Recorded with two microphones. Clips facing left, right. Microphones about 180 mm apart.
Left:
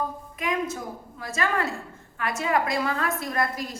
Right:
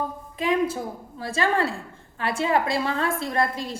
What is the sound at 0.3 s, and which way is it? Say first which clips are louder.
A woman's voice: right 5 dB; 30° right (ahead or behind).